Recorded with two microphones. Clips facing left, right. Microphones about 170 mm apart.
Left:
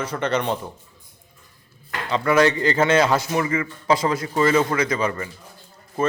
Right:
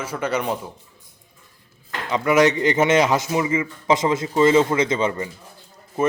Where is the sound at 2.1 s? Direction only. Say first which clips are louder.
Right 1 dB; 15° right (ahead or behind).